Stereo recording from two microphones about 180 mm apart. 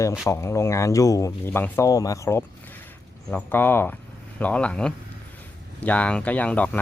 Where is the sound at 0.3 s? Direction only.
15° left (ahead or behind).